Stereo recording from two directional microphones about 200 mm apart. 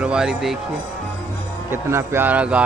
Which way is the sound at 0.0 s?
5° right (ahead or behind).